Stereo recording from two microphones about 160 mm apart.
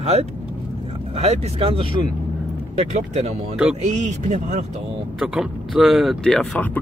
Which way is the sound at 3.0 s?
45° right (ahead or behind).